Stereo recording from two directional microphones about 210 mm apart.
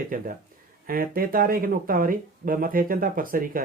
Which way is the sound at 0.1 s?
40° right (ahead or behind).